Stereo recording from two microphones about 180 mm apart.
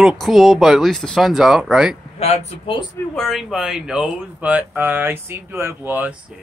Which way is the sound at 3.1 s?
Centre (ahead or behind).